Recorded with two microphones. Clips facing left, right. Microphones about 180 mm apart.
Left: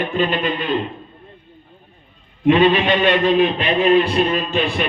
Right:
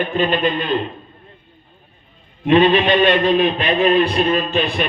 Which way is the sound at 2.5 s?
20° left (ahead or behind).